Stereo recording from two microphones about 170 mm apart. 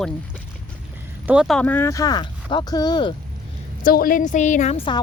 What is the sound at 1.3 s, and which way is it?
Speech, centre (ahead or behind).